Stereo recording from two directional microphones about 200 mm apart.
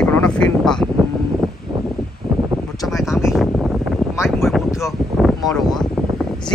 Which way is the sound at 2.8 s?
Centre (ahead or behind).